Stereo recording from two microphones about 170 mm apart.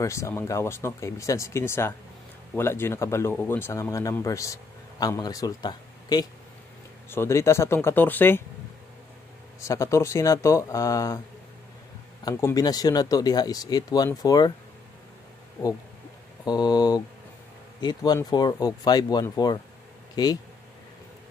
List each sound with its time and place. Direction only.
0.0 s speech: 15° left (ahead or behind)
9.6 s speech: 20° left (ahead or behind)
12.3 s speech: 20° left (ahead or behind)
16.4 s speech: 25° left (ahead or behind)